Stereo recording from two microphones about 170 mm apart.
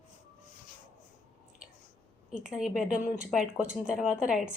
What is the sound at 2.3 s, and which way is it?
Speech, 5° right (ahead or behind).